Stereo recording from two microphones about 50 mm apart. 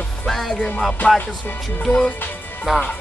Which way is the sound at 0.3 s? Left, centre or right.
Centre.